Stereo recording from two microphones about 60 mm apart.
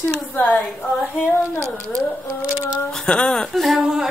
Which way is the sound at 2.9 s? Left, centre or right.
Centre.